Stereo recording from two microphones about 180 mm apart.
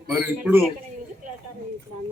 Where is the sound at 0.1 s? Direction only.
10° right (ahead or behind).